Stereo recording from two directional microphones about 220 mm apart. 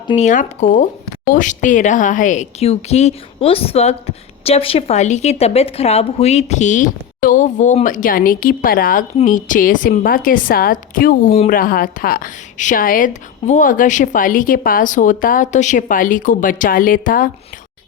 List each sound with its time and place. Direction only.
0.1 s speech: 30° left (ahead or behind)